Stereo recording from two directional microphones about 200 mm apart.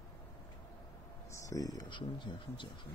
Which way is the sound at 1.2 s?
15° left (ahead or behind).